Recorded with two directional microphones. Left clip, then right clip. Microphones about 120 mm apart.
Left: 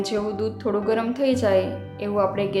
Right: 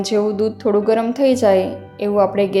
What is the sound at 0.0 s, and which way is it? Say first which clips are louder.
Speech: right 7 dB; 35° right (ahead or behind).